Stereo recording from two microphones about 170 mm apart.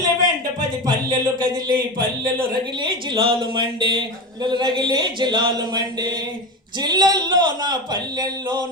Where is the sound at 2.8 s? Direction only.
30° right (ahead or behind).